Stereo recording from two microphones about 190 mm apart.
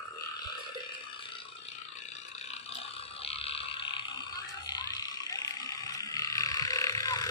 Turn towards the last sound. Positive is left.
turn(degrees=20)  # may be behind; listen again after turning